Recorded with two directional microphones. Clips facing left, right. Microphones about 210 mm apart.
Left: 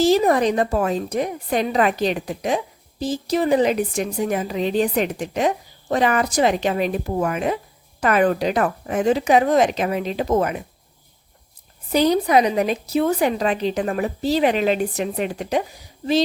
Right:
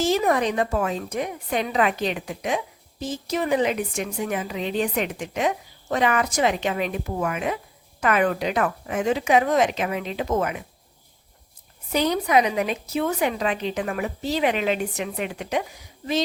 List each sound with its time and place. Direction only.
0.0 s a woman's voice: 35° left (ahead or behind)
11.9 s a woman's voice: 35° left (ahead or behind)